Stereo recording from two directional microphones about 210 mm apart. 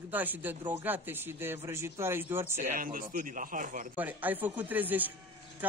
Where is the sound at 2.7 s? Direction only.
40° right (ahead or behind).